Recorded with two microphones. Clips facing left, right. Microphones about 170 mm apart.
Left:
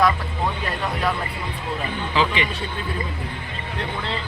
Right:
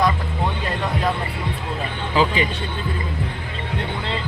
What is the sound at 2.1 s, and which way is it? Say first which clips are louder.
Speech: right 3 dB; 40° right (ahead or behind).